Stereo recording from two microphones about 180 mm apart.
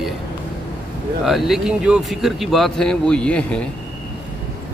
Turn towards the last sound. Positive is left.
turn(degrees=5)  # may be behind; listen again after turning